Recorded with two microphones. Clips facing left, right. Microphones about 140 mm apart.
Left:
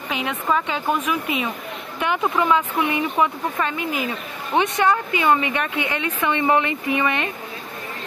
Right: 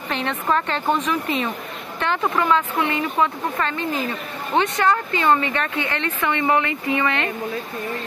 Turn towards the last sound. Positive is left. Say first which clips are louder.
# even
turn(degrees=15)  # may be behind; listen again after turning